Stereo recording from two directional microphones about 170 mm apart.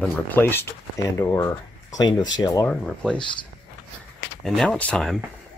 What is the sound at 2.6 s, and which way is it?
Speech, 5° left (ahead or behind).